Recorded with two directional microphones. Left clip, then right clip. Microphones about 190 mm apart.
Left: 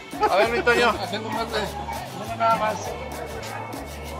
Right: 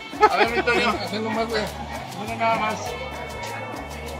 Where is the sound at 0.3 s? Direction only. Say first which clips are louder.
Left 1 dB; 50° left (ahead or behind).